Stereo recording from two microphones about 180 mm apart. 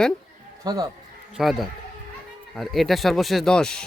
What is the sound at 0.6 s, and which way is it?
Speech, 20° right (ahead or behind).